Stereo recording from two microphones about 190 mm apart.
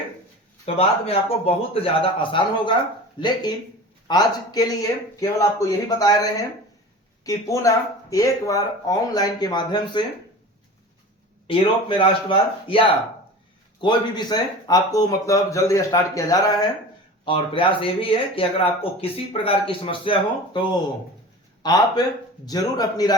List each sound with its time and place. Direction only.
0.6 s speech: 30° left (ahead or behind)
7.3 s speech: 15° left (ahead or behind)
11.4 s speech: 25° left (ahead or behind)
13.8 s speech: 20° left (ahead or behind)